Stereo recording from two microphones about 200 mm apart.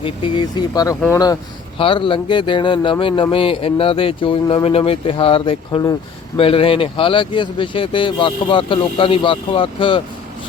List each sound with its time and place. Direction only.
0.0 s speech: 20° left (ahead or behind)
1.8 s speech: 25° left (ahead or behind)